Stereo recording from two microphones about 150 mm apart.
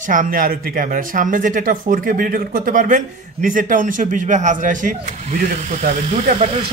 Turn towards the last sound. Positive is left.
turn(degrees=-45)  # may be behind; listen again after turning